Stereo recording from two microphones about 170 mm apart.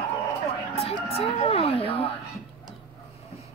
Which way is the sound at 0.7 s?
35° left (ahead or behind).